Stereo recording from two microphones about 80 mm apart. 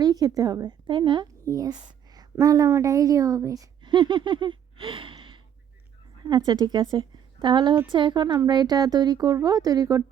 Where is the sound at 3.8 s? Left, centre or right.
Right.